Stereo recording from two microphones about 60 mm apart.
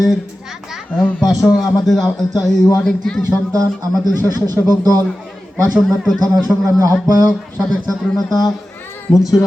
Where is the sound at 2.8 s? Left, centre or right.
Centre.